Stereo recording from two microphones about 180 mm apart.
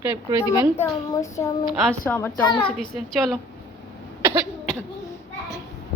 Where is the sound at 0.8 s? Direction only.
15° left (ahead or behind).